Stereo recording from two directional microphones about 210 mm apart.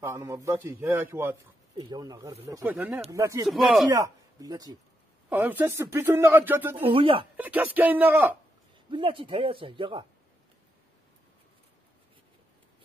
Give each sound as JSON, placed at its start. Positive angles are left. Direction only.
{"t": 0.0, "sound": "speech", "side_deg": -15}
{"t": 3.4, "sound": "speech", "side_deg": 0}
{"t": 3.9, "sound": "speech", "side_deg": -15}
{"t": 6.9, "sound": "speech", "side_deg": -25}
{"t": 7.3, "sound": "speech", "side_deg": -10}
{"t": 8.9, "sound": "speech", "side_deg": -25}